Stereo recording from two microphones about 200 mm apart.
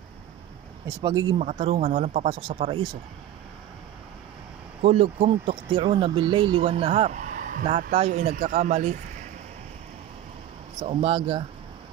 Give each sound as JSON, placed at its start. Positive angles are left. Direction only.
{"t": 0.8, "sound": "speech", "side_deg": -20}
{"t": 1.4, "sound": "speech", "side_deg": -30}
{"t": 4.8, "sound": "speech", "side_deg": -30}
{"t": 10.8, "sound": "speech", "side_deg": -30}